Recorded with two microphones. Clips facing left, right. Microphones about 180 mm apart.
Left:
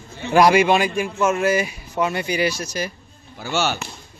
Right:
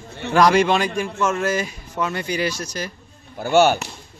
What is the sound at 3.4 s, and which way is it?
Speech, 55° right (ahead or behind).